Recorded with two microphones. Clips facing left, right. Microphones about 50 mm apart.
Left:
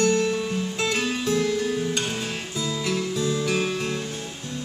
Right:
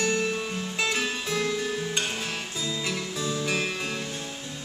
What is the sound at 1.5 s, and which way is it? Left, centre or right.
Music, centre.